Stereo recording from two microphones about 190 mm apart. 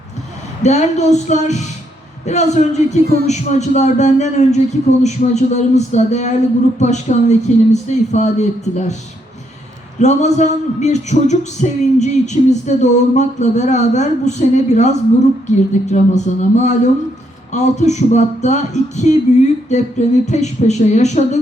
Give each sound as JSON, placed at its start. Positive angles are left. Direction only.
{"t": 0.6, "sound": "speech", "side_deg": 35}
{"t": 3.0, "sound": "speech", "side_deg": -55}
{"t": 3.2, "sound": "speech", "side_deg": 35}
{"t": 10.0, "sound": "speech", "side_deg": 35}